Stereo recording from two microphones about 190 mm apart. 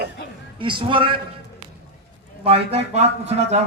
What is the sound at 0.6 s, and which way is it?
Speech, 25° right (ahead or behind).